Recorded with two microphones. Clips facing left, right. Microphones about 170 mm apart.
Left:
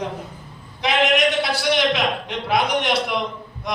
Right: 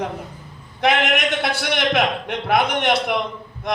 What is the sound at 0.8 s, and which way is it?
A man's voice, 55° right (ahead or behind).